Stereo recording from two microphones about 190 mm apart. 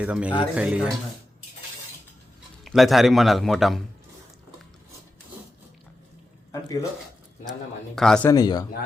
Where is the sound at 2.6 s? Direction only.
Centre (ahead or behind).